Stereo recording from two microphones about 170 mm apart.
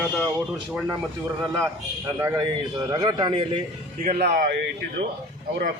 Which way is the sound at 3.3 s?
35° right (ahead or behind).